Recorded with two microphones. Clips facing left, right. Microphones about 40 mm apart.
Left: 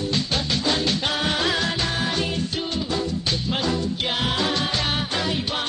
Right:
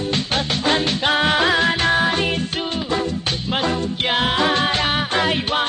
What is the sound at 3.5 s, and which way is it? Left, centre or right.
Music, right.